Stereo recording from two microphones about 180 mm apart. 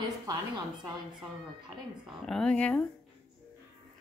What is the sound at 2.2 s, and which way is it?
Speech, 5° left (ahead or behind).